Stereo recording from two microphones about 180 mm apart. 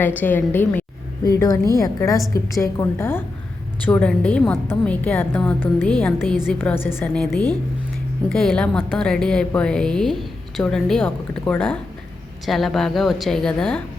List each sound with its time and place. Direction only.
0.0 s a woman's voice: 10° left (ahead or behind)